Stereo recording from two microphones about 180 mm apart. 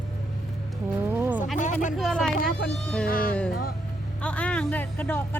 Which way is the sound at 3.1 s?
55° left (ahead or behind).